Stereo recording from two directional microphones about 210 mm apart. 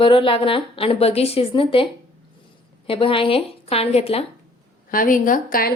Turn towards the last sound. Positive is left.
turn(degrees=40)  # may be behind; listen again after turning